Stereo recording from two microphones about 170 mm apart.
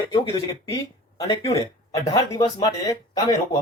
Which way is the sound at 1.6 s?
20° left (ahead or behind).